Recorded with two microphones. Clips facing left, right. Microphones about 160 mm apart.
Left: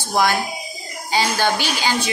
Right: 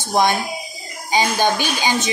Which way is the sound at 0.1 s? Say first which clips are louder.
Right 1 dB; 20° right (ahead or behind).